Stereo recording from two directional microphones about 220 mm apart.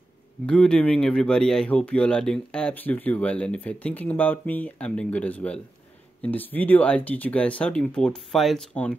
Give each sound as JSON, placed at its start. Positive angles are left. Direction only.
{"t": 0.5, "sound": "speech", "side_deg": 5}